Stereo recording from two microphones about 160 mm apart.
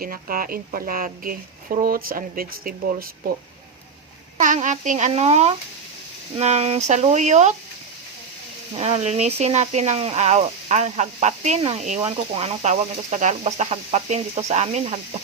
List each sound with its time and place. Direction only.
0.0 s speech: 65° right (ahead or behind)
4.4 s speech: 50° right (ahead or behind)
8.7 s speech: 40° right (ahead or behind)